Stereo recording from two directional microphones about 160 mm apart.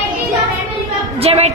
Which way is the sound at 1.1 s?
40° right (ahead or behind).